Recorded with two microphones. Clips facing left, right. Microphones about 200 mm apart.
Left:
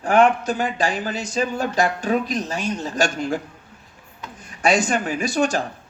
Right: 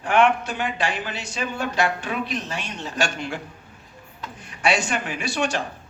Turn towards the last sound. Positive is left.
turn(degrees=40)  # may be behind; listen again after turning